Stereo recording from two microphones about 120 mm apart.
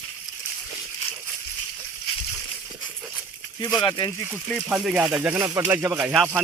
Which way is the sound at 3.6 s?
30° left (ahead or behind).